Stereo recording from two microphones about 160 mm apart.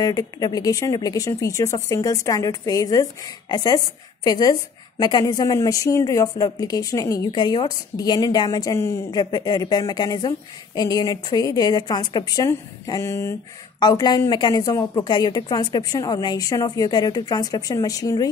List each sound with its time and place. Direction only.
0.0 s speech: 25° left (ahead or behind)